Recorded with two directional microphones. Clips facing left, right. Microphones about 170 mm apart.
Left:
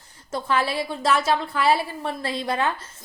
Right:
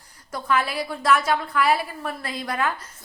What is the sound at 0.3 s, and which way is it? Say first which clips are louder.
Speech: left 1 dB; 25° left (ahead or behind).